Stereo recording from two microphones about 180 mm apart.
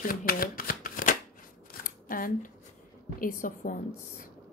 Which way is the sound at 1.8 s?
50° left (ahead or behind).